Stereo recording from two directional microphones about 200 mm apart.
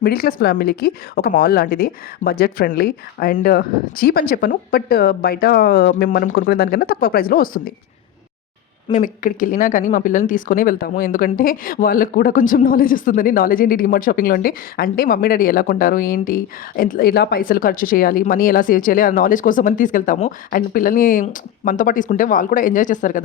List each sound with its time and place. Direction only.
0.0 s speech: 50° left (ahead or behind)
8.9 s speech: 40° left (ahead or behind)